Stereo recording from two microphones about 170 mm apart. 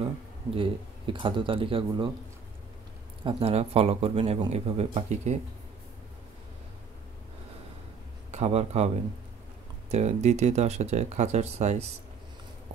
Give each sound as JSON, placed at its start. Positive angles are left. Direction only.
{"t": 0.6, "sound": "speech", "side_deg": -30}
{"t": 3.3, "sound": "speech", "side_deg": -35}
{"t": 8.3, "sound": "a man's voice", "side_deg": -40}
{"t": 9.8, "sound": "speech", "side_deg": -40}